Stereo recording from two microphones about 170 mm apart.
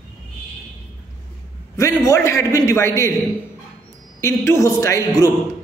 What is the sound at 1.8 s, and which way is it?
A man's voice, 20° left (ahead or behind).